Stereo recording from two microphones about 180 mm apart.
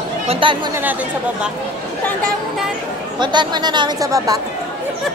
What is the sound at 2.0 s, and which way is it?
Speech, 5° left (ahead or behind).